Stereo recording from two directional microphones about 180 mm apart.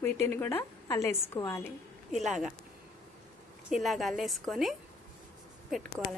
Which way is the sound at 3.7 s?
Centre (ahead or behind).